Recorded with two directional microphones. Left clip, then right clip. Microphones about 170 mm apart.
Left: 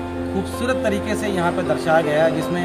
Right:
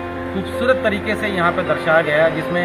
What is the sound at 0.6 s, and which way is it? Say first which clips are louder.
A woman's voice: right 5 dB; 55° left (ahead or behind).